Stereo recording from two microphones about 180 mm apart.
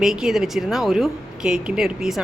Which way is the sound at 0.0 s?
5° right (ahead or behind).